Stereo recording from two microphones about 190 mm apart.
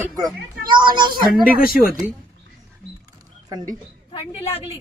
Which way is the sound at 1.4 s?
50° left (ahead or behind).